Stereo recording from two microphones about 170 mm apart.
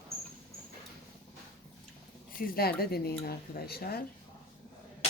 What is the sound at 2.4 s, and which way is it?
Speech, 60° left (ahead or behind).